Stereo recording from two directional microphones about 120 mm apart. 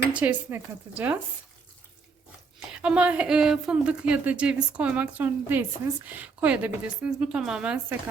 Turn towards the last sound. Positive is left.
turn(degrees=-10)  # may be behind; listen again after turning